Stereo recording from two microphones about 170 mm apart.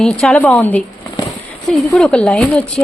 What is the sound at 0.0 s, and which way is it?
Speech, 5° left (ahead or behind).